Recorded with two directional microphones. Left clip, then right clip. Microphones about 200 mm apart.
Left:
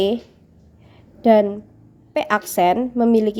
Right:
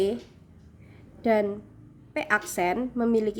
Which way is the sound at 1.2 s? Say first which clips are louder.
Left 9 dB; 30° left (ahead or behind).